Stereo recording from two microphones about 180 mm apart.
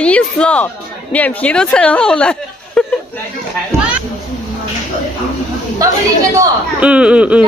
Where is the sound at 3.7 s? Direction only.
15° right (ahead or behind).